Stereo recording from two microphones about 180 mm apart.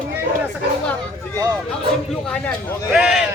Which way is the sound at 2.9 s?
Centre (ahead or behind).